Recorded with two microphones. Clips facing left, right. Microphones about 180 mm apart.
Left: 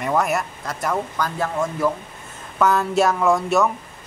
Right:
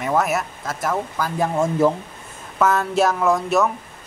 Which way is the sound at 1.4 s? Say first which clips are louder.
Right 5 dB; 20° right (ahead or behind).